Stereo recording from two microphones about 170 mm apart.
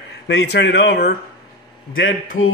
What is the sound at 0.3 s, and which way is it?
Speech, 85° left.